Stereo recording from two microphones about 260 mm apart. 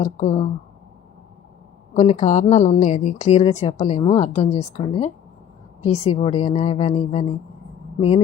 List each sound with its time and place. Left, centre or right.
0.0 s speech: left
1.9 s speech: left